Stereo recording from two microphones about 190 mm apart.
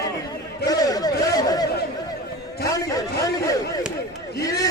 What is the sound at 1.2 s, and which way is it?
Chatter, 20° left (ahead or behind).